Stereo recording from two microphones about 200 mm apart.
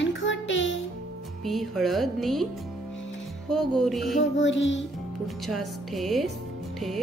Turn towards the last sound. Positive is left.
turn(degrees=0)  # may be behind; listen again after turning